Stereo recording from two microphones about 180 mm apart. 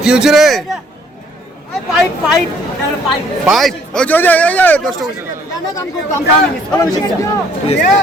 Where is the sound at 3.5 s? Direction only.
5° left (ahead or behind).